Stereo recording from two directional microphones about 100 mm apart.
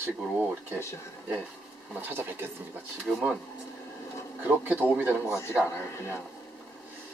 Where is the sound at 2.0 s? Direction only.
20° right (ahead or behind).